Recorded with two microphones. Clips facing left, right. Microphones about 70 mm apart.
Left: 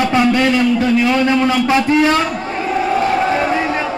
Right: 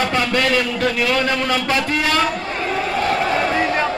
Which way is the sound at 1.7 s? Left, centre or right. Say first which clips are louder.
Left 7 dB; centre.